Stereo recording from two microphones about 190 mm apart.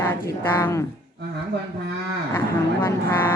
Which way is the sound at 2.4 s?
10° left (ahead or behind).